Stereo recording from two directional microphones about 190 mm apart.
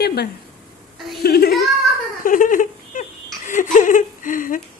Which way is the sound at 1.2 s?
55° left (ahead or behind).